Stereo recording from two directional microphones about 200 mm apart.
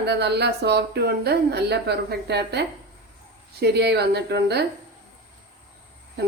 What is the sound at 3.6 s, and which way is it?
Speech, 55° right (ahead or behind).